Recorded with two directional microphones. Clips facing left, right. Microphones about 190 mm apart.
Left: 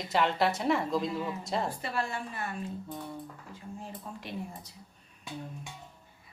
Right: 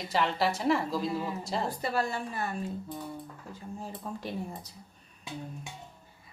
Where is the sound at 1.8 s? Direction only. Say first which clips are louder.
Right 3 dB; 40° right (ahead or behind).